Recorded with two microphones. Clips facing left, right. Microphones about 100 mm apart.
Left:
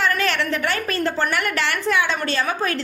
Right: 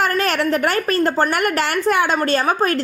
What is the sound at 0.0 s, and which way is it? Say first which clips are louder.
A woman's voice: right 3 dB; 45° right (ahead or behind).